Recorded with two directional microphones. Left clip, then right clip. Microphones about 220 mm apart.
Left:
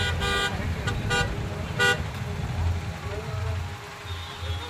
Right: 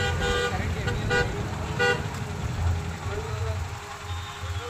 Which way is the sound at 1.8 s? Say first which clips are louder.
Left 1 dB; 45° left (ahead or behind).